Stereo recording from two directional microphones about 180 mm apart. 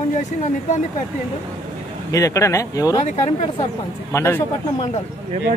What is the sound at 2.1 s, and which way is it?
Speech, 20° left (ahead or behind).